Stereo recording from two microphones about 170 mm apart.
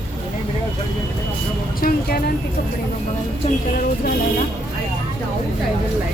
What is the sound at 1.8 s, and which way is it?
Speech, 65° left (ahead or behind).